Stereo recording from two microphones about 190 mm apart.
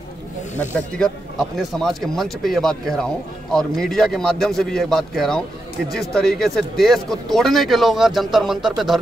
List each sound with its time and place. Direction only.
0.7 s speech: 5° left (ahead or behind)